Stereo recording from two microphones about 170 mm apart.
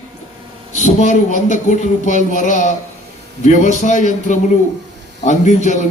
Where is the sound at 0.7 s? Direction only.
45° left (ahead or behind).